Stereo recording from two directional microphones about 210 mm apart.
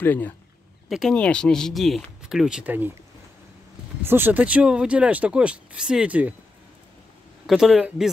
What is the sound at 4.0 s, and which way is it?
Speech, 10° right (ahead or behind).